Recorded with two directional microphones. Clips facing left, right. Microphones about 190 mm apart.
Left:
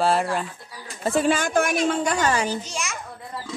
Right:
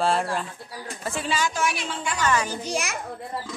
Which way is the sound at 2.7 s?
60° right (ahead or behind).